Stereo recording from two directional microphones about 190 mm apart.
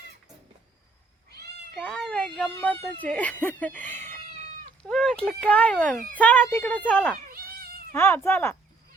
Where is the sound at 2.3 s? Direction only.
10° left (ahead or behind).